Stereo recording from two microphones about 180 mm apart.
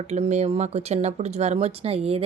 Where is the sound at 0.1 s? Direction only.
40° right (ahead or behind).